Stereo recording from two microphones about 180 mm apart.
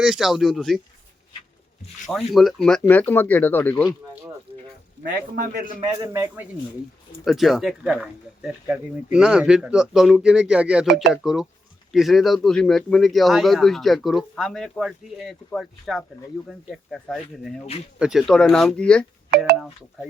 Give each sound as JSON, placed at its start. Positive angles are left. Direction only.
{"t": 0.0, "sound": "speech", "side_deg": -5}
{"t": 2.0, "sound": "speech", "side_deg": 0}
{"t": 5.0, "sound": "a man's voice", "side_deg": -50}
{"t": 5.8, "sound": "speech", "side_deg": -15}